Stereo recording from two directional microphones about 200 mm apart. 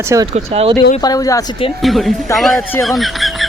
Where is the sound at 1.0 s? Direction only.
20° left (ahead or behind).